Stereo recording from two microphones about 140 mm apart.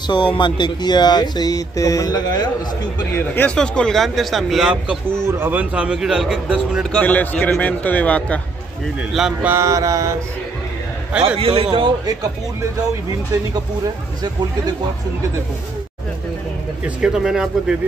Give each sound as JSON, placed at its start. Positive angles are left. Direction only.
{"t": 0.0, "sound": "speech", "side_deg": 35}
{"t": 3.2, "sound": "speech", "side_deg": 10}
{"t": 5.2, "sound": "a man's voice", "side_deg": -15}
{"t": 7.0, "sound": "a man's voice", "side_deg": 10}
{"t": 9.1, "sound": "speech", "side_deg": -5}
{"t": 9.5, "sound": "mantra", "side_deg": -20}
{"t": 11.2, "sound": "a man's voice", "side_deg": -40}
{"t": 16.8, "sound": "speech", "side_deg": -5}